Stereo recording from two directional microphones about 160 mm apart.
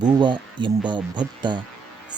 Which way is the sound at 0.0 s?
30° right (ahead or behind).